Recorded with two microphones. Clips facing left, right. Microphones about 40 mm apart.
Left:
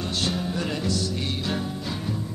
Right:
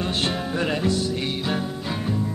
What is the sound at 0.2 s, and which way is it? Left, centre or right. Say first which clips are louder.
Music: even; right.